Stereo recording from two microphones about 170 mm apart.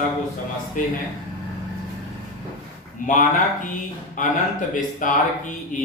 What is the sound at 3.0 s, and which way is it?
A man's voice, 50° left (ahead or behind).